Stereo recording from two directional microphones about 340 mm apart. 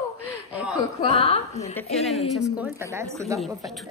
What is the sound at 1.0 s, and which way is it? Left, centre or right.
Speech, centre.